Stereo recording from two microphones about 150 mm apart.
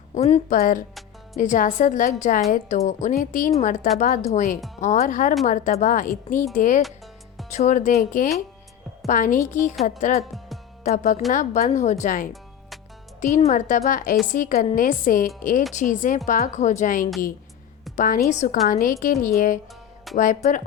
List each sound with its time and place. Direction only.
0.1 s a woman's voice: 45° left (ahead or behind)
0.5 s a woman's voice: 70° left (ahead or behind)
18.3 s speech: 50° left (ahead or behind)
18.7 s a woman's voice: 65° left (ahead or behind)